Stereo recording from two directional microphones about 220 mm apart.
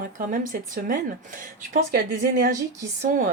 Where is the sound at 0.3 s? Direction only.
40° right (ahead or behind).